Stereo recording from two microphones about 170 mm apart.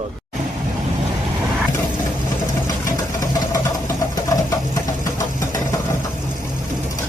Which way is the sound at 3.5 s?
20° left (ahead or behind).